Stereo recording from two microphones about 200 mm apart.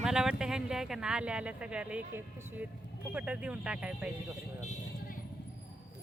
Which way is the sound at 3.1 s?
5° right (ahead or behind).